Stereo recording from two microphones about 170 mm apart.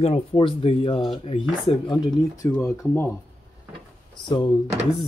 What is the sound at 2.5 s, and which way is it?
Speech, 15° left (ahead or behind).